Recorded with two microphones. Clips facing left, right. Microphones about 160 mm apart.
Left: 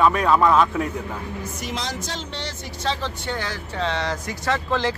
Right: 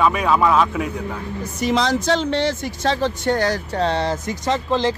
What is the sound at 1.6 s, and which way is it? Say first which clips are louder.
Speech: right 14 dB; 75° right (ahead or behind).